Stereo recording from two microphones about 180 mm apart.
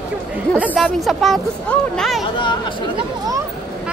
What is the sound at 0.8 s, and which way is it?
Speech, centre (ahead or behind).